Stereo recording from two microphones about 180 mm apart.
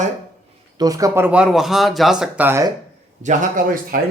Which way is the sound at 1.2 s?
5° right (ahead or behind).